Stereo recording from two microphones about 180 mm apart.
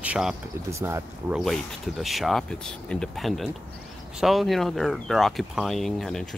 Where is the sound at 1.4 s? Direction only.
Centre (ahead or behind).